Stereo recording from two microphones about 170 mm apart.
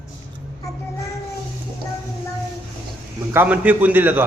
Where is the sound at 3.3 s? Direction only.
10° right (ahead or behind).